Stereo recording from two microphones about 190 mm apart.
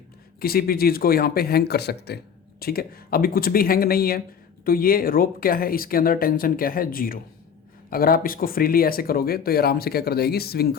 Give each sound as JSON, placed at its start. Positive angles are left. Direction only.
{"t": 0.3, "sound": "speech", "side_deg": 50}